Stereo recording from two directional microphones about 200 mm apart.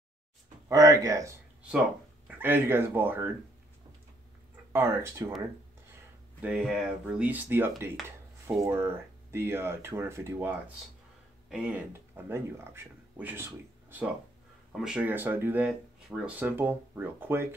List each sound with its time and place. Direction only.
0.7 s speech: 15° right (ahead or behind)
4.7 s speech: 15° right (ahead or behind)
6.4 s speech: 5° right (ahead or behind)
11.5 s speech: 5° right (ahead or behind)